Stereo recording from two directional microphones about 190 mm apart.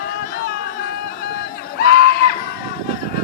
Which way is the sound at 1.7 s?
60° left (ahead or behind).